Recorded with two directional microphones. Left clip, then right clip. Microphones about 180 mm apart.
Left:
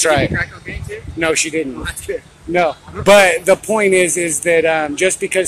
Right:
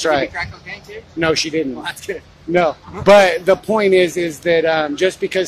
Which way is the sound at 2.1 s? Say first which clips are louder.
Left 5 dB; 55° right (ahead or behind).